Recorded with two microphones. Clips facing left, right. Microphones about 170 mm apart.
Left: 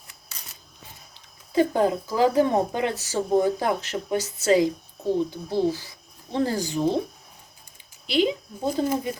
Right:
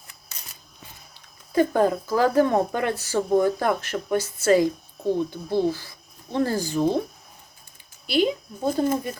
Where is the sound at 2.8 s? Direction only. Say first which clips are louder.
Right 1 dB; 55° right (ahead or behind).